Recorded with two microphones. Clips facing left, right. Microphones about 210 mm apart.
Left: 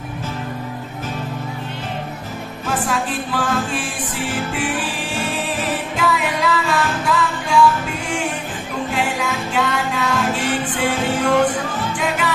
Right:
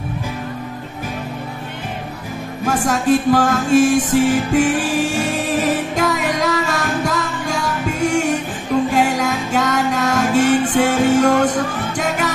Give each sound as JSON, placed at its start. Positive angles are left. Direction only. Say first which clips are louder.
{"t": 2.6, "sound": "music", "louder": "right 5 dB", "side_deg": -45}